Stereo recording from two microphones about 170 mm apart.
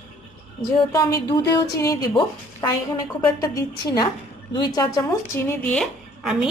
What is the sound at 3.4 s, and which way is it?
A woman's voice, 20° left (ahead or behind).